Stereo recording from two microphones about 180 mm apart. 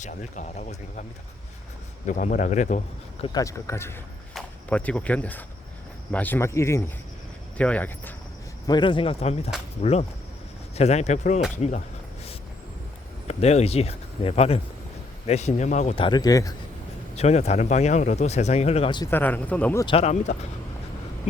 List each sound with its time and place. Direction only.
0.0 s speech: 45° left (ahead or behind)
2.0 s speech: 45° left (ahead or behind)
3.3 s speech: 15° left (ahead or behind)
8.6 s a man's voice: 25° left (ahead or behind); by 11.8 s 40° left (ahead or behind)
13.2 s speech: 35° left (ahead or behind); by 16.6 s 20° left (ahead or behind)
17.2 s speech: 40° left (ahead or behind)
19.1 s speech: 10° left (ahead or behind)
19.8 s a man's voice: 30° left (ahead or behind)